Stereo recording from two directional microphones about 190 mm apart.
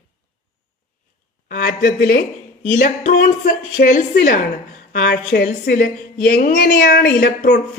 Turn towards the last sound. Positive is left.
turn(degrees=55)  # may be behind; listen again after turning